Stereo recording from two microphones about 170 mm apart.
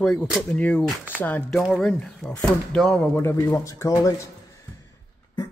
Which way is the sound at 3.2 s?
15° left (ahead or behind).